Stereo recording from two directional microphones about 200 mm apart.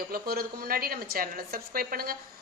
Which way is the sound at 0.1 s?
50° right (ahead or behind).